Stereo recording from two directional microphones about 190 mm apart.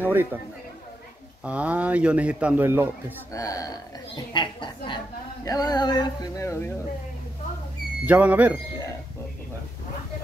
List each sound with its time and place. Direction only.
0.0 s speech: 10° right (ahead or behind)
1.4 s speech: 5° right (ahead or behind)
3.3 s speech: 20° left (ahead or behind)
8.0 s speech: 10° right (ahead or behind)